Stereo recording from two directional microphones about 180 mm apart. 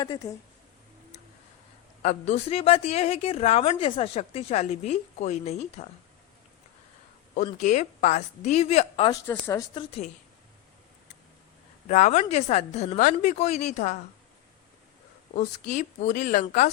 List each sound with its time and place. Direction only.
0.0 s speech: 20° left (ahead or behind)
2.0 s a woman's voice: 40° left (ahead or behind)
7.3 s a woman's voice: 45° left (ahead or behind)
9.2 s speech: 15° left (ahead or behind)
11.9 s a woman's voice: 40° left (ahead or behind)
15.4 s a woman's voice: 45° left (ahead or behind)